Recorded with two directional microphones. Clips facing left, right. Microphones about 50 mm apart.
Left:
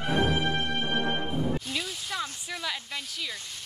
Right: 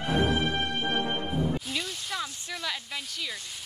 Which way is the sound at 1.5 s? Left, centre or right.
Centre.